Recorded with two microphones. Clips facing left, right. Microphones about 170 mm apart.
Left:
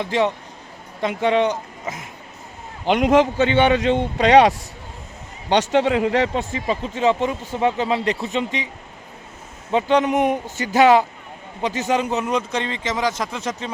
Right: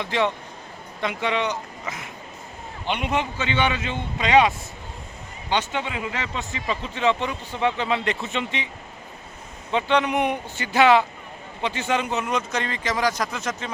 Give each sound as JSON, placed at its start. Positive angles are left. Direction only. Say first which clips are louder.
{"t": 0.0, "sound": "a man's voice", "louder": "left 3 dB", "side_deg": 40}
{"t": 2.8, "sound": "a man's voice", "louder": "left 10 dB", "side_deg": 90}
{"t": 3.4, "sound": "a man's voice", "louder": "left 8 dB", "side_deg": 55}
{"t": 6.5, "sound": "a man's voice", "louder": "left 5 dB", "side_deg": 45}
{"t": 9.7, "sound": "a man's voice", "louder": "left 4 dB", "side_deg": 40}